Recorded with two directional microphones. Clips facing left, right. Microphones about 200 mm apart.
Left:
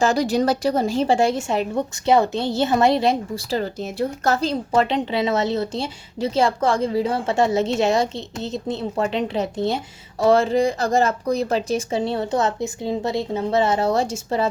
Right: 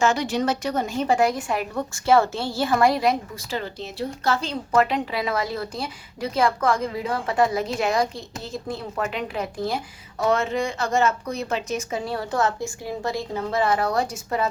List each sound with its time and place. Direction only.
0.0 s speech: 35° left (ahead or behind)